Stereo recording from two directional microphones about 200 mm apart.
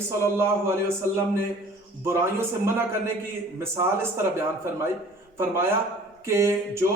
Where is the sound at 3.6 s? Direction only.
15° right (ahead or behind).